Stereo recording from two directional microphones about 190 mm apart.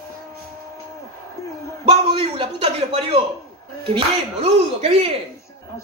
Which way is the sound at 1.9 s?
30° right (ahead or behind).